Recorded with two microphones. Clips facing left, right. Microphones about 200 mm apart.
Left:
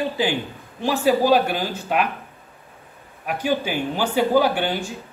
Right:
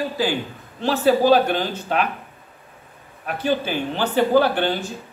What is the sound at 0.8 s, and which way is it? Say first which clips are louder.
A woman's voice: right 2 dB; 10° left (ahead or behind).